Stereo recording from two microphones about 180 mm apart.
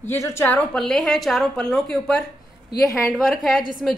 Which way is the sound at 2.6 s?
20° left (ahead or behind).